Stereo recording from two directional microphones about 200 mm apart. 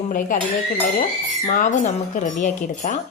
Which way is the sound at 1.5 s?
40° left (ahead or behind).